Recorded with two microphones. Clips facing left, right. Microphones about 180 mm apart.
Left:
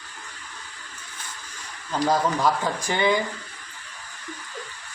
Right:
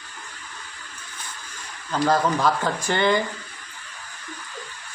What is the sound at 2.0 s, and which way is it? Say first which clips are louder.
Speech: right 1 dB; 10° left (ahead or behind).